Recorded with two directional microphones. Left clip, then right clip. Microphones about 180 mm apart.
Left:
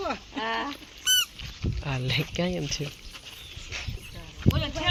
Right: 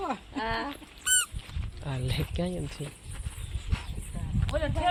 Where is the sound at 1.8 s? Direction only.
10° left (ahead or behind).